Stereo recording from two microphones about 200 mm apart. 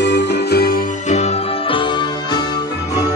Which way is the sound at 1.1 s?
30° left (ahead or behind).